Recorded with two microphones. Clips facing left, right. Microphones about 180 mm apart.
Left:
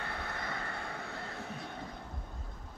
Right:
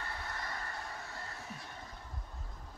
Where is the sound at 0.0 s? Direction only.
60° left (ahead or behind).